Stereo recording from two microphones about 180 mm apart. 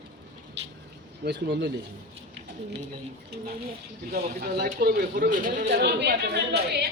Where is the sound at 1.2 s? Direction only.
70° right (ahead or behind).